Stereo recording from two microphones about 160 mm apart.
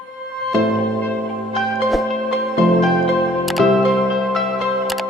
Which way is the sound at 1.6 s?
Centre (ahead or behind).